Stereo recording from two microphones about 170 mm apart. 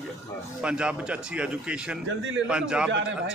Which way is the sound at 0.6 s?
5° right (ahead or behind).